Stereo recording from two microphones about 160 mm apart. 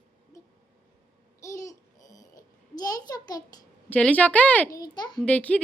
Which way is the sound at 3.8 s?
10° left (ahead or behind).